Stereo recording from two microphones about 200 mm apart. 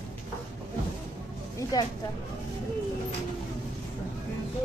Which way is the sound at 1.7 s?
20° left (ahead or behind).